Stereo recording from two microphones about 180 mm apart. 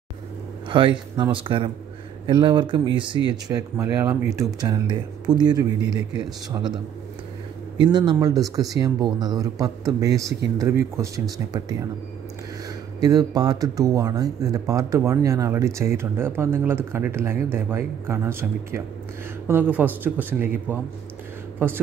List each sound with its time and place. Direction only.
0.7 s speech: 25° right (ahead or behind)
7.8 s speech: 25° right (ahead or behind)
13.0 s speech: 20° right (ahead or behind)